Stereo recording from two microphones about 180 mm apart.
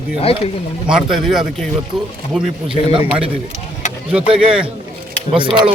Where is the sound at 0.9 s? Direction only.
Centre (ahead or behind).